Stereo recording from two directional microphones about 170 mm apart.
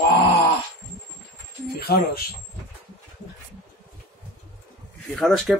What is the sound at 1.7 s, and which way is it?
Speech, 60° left (ahead or behind).